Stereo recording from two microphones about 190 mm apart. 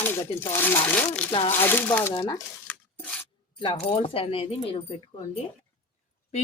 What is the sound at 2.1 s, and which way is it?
Speech, 25° left (ahead or behind).